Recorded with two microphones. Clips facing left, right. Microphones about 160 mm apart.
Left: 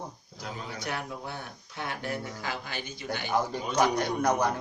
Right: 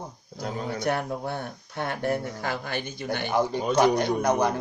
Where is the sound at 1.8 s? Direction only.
50° right (ahead or behind).